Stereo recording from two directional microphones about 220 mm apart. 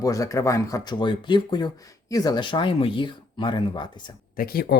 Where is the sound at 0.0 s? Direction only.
15° left (ahead or behind).